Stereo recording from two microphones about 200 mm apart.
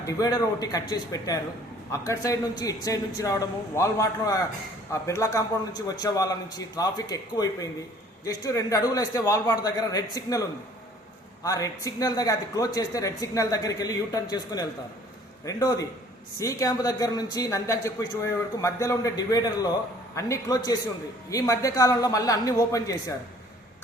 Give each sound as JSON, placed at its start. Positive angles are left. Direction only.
{"t": 0.0, "sound": "speech", "side_deg": 20}
{"t": 11.4, "sound": "speech", "side_deg": 15}